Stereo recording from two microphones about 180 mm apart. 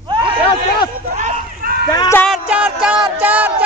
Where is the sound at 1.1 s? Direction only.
45° right (ahead or behind).